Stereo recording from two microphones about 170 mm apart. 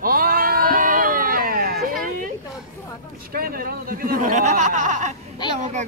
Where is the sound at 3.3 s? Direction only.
60° right (ahead or behind).